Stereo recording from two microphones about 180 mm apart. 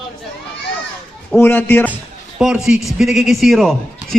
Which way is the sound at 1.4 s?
10° left (ahead or behind).